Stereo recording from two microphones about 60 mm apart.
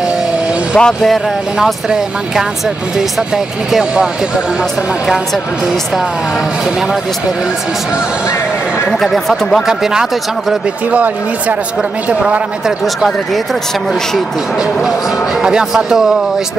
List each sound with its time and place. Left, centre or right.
0.7 s speech: centre
9.0 s speech: centre
10.9 s speech: right
12.1 s speech: centre
15.4 s speech: centre